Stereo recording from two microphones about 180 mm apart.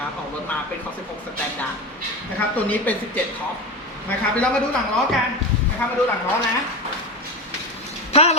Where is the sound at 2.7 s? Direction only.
10° left (ahead or behind).